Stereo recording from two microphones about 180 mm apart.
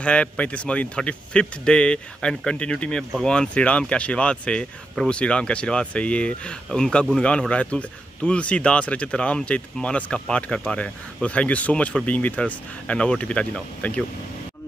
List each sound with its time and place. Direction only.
0.0 s speech: 5° left (ahead or behind)